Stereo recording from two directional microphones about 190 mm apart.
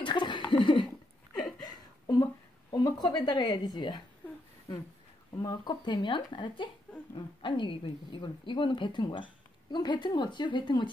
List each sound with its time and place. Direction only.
0.0 s a sound: 25° left (ahead or behind)
2.8 s a woman's voice: 20° left (ahead or behind)
5.3 s a woman's voice: 20° left (ahead or behind)